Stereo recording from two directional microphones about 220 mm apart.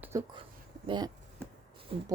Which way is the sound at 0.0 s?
15° right (ahead or behind).